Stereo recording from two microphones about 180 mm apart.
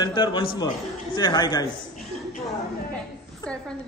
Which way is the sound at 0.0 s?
25° left (ahead or behind).